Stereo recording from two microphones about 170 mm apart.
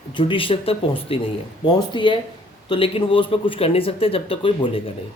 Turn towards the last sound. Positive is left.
turn(degrees=30)  # may be behind; listen again after turning